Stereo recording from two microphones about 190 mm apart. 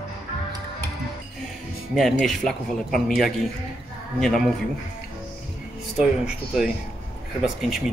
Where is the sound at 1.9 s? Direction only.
Centre (ahead or behind).